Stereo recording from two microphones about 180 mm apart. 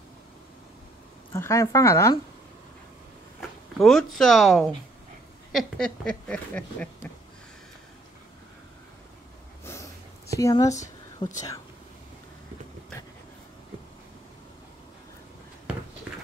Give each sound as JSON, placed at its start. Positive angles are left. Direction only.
{"t": 1.3, "sound": "a woman's voice", "side_deg": 15}
{"t": 3.3, "sound": "speech", "side_deg": 0}
{"t": 5.5, "sound": "a sound", "side_deg": 0}
{"t": 9.7, "sound": "snort", "side_deg": 15}
{"t": 10.4, "sound": "a woman's voice", "side_deg": 20}
{"t": 15.7, "sound": "walk", "side_deg": -5}